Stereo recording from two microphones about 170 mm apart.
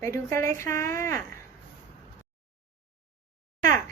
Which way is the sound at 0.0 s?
15° left (ahead or behind).